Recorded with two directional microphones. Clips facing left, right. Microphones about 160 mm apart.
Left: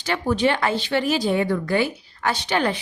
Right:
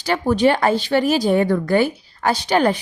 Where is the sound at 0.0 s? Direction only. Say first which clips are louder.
Right 4 dB; 40° right (ahead or behind).